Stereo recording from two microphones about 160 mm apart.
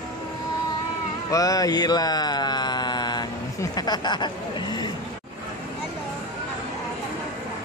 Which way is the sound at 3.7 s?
25° left (ahead or behind).